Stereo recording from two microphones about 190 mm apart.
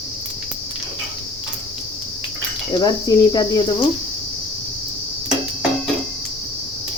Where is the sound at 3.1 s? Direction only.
20° left (ahead or behind).